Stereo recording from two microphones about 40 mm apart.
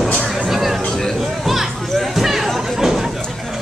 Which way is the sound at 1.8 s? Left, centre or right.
Centre.